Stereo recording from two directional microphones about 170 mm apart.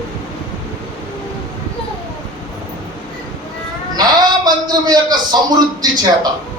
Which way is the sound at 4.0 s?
25° right (ahead or behind).